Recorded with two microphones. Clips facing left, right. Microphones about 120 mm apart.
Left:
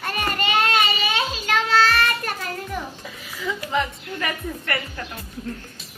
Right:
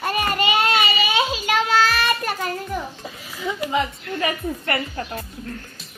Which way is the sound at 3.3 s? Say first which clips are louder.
Right 2 dB; 20° right (ahead or behind).